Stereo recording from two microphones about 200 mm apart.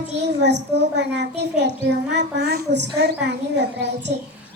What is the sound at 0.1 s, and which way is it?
Child singing, 60° right (ahead or behind).